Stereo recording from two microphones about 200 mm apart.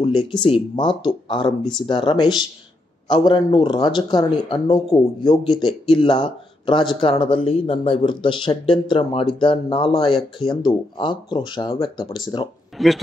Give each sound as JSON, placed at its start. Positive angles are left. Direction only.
{"t": 0.4, "sound": "speech", "side_deg": 25}
{"t": 12.7, "sound": "speech", "side_deg": 0}